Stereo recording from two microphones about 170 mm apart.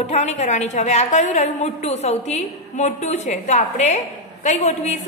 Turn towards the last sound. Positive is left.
turn(degrees=45)  # may be behind; listen again after turning